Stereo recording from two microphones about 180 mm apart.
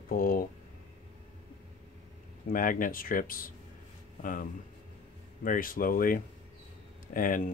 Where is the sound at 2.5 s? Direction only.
50° left (ahead or behind).